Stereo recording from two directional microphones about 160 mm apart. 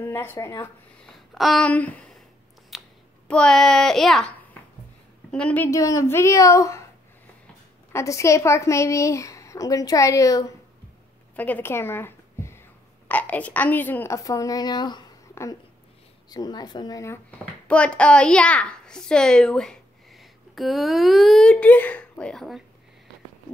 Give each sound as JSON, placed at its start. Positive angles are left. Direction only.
{"t": 0.0, "sound": "a woman's voice", "side_deg": 15}
{"t": 1.0, "sound": "a sound", "side_deg": 0}
{"t": 3.3, "sound": "a child's voice", "side_deg": 5}
{"t": 5.3, "sound": "a woman's voice", "side_deg": 5}
{"t": 5.7, "sound": "a woman's voice", "side_deg": 20}
{"t": 7.9, "sound": "a woman's voice", "side_deg": 20}
{"t": 11.3, "sound": "a sound", "side_deg": 10}
{"t": 13.1, "sound": "a woman's voice", "side_deg": 10}
{"t": 16.3, "sound": "a woman's voice", "side_deg": 25}
{"t": 17.6, "sound": "a child's voice", "side_deg": 5}